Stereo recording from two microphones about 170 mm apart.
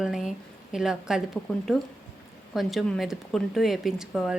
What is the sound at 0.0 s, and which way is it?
A woman's voice, centre (ahead or behind).